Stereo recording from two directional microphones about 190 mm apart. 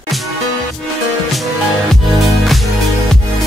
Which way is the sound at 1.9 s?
Centre (ahead or behind).